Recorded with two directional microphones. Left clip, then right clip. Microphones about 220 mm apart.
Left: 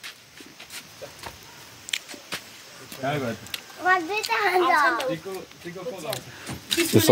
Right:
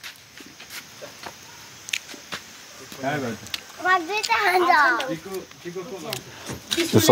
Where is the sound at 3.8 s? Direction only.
25° right (ahead or behind).